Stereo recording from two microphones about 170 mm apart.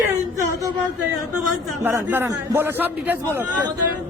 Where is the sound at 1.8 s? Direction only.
10° right (ahead or behind).